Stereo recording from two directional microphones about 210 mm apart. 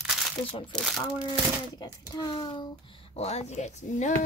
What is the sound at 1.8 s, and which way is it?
A child's voice, 20° left (ahead or behind).